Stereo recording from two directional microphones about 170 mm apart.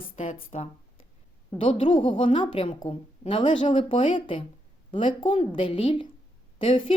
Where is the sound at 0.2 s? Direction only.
40° left (ahead or behind).